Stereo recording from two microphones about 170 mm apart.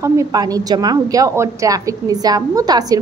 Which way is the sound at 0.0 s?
20° right (ahead or behind).